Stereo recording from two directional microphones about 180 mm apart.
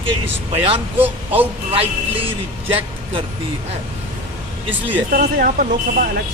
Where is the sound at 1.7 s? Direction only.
30° right (ahead or behind).